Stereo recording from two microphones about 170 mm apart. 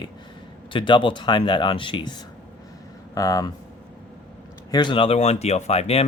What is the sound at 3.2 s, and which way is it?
Speech, 20° left (ahead or behind).